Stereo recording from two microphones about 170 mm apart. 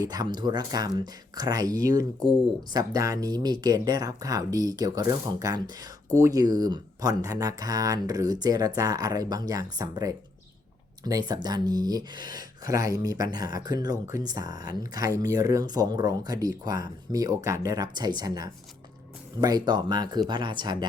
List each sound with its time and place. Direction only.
0.0 s speech: 25° right (ahead or behind)